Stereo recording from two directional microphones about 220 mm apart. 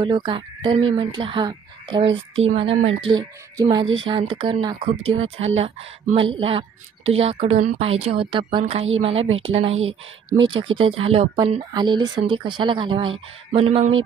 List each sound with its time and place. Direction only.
0.0 s a woman's voice: 20° right (ahead or behind)
9.8 s speech: 60° right (ahead or behind)
10.6 s a woman's voice: 25° right (ahead or behind)